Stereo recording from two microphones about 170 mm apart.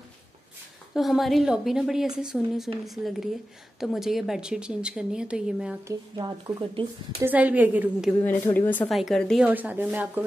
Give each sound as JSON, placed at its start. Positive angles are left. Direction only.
{"t": 0.9, "sound": "a woman's voice", "side_deg": 0}
{"t": 5.9, "sound": "speech", "side_deg": -20}
{"t": 7.2, "sound": "a woman's voice", "side_deg": -10}
{"t": 8.2, "sound": "a woman's voice", "side_deg": 10}
{"t": 9.5, "sound": "a woman's voice", "side_deg": -10}